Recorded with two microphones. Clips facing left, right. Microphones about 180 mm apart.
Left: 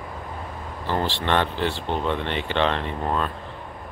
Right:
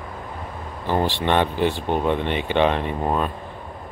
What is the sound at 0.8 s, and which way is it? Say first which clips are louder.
Speech: right 4 dB; 15° right (ahead or behind).